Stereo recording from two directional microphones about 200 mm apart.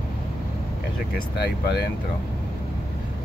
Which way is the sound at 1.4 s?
55° left (ahead or behind).